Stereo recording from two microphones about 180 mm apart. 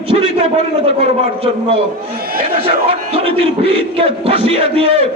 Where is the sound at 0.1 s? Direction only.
35° right (ahead or behind).